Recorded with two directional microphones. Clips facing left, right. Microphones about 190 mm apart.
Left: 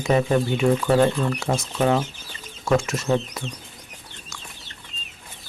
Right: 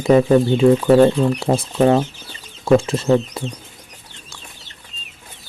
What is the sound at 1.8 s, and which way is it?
Speech, 10° right (ahead or behind).